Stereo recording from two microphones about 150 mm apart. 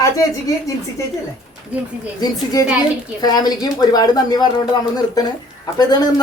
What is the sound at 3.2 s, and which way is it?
Speech, 25° left (ahead or behind).